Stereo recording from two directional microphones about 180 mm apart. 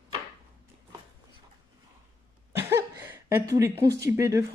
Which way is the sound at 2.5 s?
15° right (ahead or behind).